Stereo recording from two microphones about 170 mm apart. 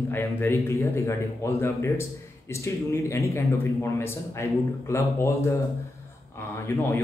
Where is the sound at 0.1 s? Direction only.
15° left (ahead or behind).